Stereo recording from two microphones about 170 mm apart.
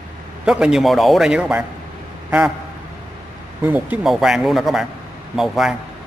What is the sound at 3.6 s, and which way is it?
A man's voice, 10° right (ahead or behind).